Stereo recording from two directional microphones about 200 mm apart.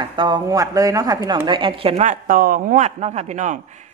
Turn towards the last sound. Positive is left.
turn(degrees=-35)  # may be behind; listen again after turning